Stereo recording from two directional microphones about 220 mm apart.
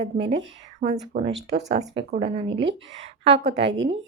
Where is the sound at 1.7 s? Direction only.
30° right (ahead or behind).